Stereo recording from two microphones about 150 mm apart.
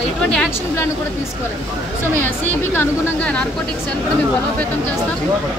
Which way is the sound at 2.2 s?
15° left (ahead or behind).